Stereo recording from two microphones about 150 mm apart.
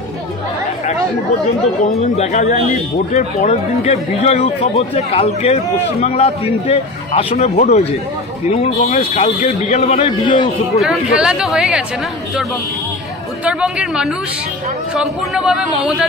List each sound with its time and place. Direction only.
1.9 s speech: 45° left (ahead or behind)
10.8 s a man's voice: 5° right (ahead or behind)
13.4 s a man's voice: 10° right (ahead or behind)